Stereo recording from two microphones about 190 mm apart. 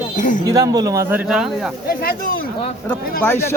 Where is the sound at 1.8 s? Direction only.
50° left (ahead or behind).